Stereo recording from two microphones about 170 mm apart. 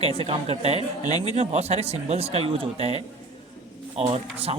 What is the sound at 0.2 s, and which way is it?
Speech, 35° right (ahead or behind).